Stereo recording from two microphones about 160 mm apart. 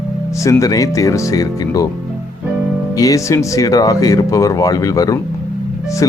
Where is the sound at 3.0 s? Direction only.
20° left (ahead or behind).